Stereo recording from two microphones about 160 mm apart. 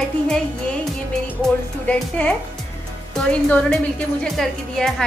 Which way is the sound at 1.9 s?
10° left (ahead or behind).